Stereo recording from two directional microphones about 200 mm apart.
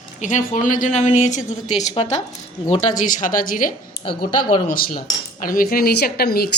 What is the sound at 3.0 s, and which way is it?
Speech, 40° left (ahead or behind).